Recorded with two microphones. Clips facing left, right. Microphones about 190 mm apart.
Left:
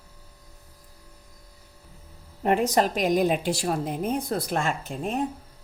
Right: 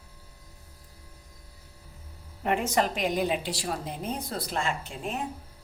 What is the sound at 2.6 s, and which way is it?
A woman's voice, 40° left (ahead or behind).